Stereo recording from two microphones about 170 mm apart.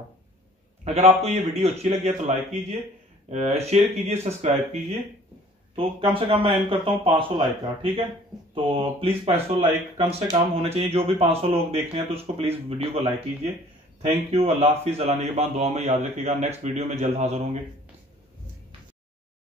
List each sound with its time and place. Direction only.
0.8 s a man's voice: 40° right (ahead or behind)
6.1 s a man's voice: 30° right (ahead or behind)
14.3 s a man's voice: 35° right (ahead or behind)